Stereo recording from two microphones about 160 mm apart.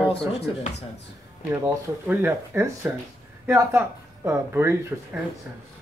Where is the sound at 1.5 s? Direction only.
20° right (ahead or behind).